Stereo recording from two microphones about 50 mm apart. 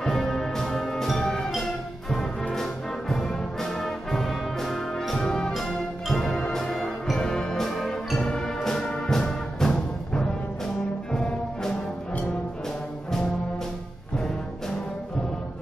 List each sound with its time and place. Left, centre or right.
0.0 s music: centre
2.5 s brass instrument: centre
5.2 s music: centre
8.2 s music: centre